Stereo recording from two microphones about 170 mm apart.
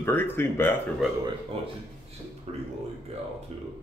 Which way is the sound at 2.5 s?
35° right (ahead or behind).